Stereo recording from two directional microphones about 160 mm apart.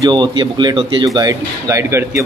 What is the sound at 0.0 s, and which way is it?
Speech, 30° right (ahead or behind).